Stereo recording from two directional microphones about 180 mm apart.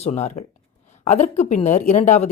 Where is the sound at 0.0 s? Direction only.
40° left (ahead or behind).